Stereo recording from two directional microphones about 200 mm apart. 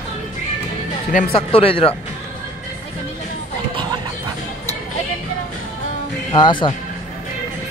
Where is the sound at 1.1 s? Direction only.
40° left (ahead or behind).